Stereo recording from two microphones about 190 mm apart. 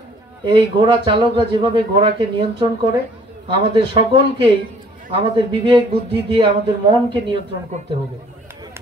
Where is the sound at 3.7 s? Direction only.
25° right (ahead or behind).